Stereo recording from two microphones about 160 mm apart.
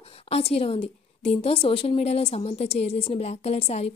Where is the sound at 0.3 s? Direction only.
40° left (ahead or behind).